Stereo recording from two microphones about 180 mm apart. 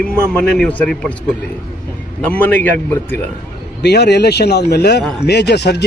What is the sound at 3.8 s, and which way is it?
Speech, 65° left (ahead or behind).